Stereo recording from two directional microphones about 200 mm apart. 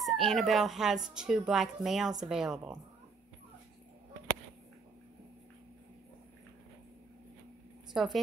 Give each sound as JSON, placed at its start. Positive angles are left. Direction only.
{"t": 0.0, "sound": "speech", "side_deg": 0}
{"t": 7.9, "sound": "a woman's voice", "side_deg": 0}